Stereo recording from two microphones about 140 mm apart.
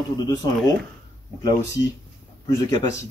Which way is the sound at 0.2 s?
25° left (ahead or behind).